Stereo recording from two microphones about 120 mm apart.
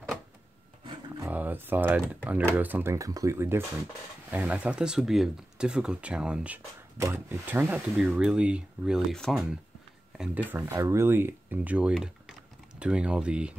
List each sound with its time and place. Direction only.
1.2 s shuffling cards: 15° right (ahead or behind)
2.0 s speech: 10° right (ahead or behind)
12.0 s typing: 5° right (ahead or behind)